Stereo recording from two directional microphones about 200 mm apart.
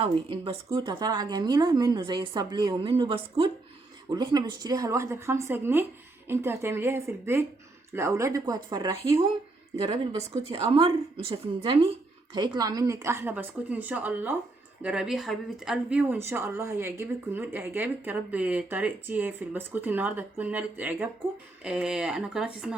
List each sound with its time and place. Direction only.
0.0 s a woman's voice: 25° right (ahead or behind); by 22.7 s centre (ahead or behind)